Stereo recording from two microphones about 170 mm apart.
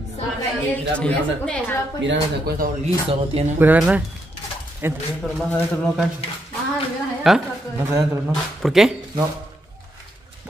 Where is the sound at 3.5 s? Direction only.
10° right (ahead or behind).